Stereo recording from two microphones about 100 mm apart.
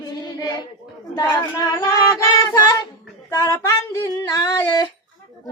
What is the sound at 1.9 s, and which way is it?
Music, 40° left (ahead or behind).